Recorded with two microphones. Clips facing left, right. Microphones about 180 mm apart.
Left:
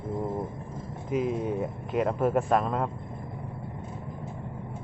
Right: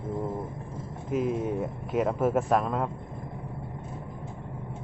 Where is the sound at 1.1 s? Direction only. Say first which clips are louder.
Even; centre (ahead or behind).